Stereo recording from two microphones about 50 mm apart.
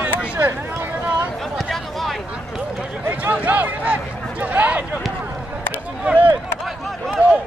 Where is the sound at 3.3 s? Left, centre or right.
Right.